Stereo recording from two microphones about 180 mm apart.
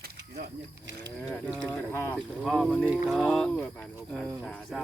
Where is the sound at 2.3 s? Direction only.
Centre (ahead or behind).